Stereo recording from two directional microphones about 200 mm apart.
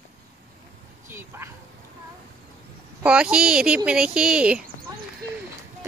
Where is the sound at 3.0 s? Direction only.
5° right (ahead or behind).